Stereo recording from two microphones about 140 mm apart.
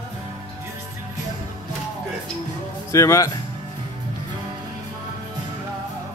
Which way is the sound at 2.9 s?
20° left (ahead or behind).